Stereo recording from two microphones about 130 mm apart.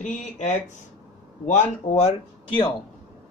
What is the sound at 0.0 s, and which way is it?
Speech, 70° left (ahead or behind).